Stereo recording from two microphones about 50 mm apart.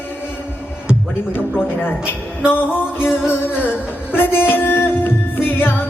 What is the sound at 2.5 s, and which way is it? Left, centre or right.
Music, left.